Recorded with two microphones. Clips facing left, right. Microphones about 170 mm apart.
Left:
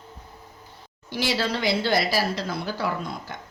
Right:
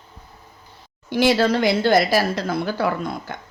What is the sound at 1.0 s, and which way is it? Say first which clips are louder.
Speech: right 9 dB; 55° right (ahead or behind).